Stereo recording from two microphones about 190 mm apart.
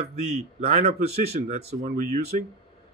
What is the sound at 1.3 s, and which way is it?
Speech, 35° right (ahead or behind).